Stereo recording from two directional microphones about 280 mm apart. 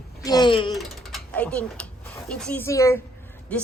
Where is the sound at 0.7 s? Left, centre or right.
Centre.